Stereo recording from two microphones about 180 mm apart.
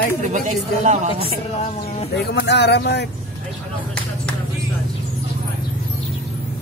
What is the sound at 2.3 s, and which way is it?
Speech, 70° left (ahead or behind).